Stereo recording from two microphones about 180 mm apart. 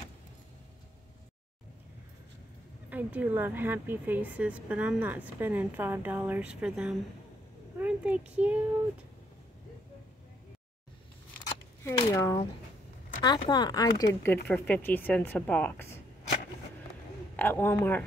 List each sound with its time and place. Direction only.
2.9 s a woman's voice: 10° right (ahead or behind)
11.4 s a sound: 15° left (ahead or behind)
13.2 s speech: 25° left (ahead or behind)
17.4 s speech: 10° left (ahead or behind)